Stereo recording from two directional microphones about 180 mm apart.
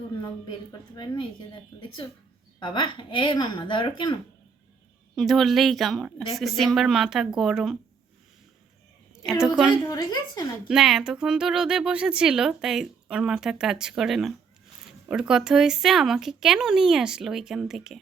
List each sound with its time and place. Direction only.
0.2 s a woman's voice: 25° left (ahead or behind)
5.1 s speech: centre (ahead or behind)
9.1 s a woman's voice: 5° right (ahead or behind)
9.8 s a woman's voice: 15° left (ahead or behind)
10.7 s speech: 5° right (ahead or behind)